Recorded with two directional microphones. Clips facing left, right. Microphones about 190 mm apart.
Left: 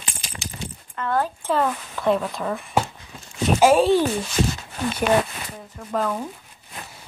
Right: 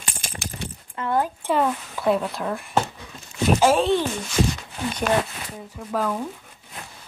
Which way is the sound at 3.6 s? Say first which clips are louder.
Left 4 dB; 5° left (ahead or behind).